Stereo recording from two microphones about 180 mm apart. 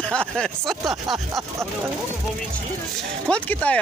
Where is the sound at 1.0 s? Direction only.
20° right (ahead or behind).